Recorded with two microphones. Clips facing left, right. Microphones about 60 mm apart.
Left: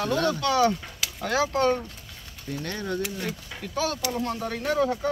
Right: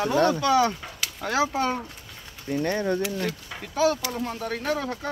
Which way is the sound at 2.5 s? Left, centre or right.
Right.